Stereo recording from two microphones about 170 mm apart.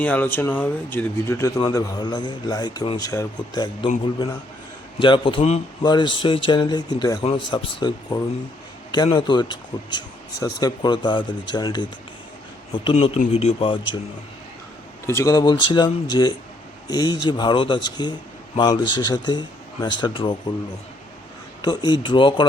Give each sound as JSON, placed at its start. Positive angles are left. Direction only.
{"t": 0.0, "sound": "speech", "side_deg": 10}
{"t": 4.9, "sound": "speech", "side_deg": 30}
{"t": 15.0, "sound": "a man's voice", "side_deg": 15}
{"t": 21.6, "sound": "speech", "side_deg": 25}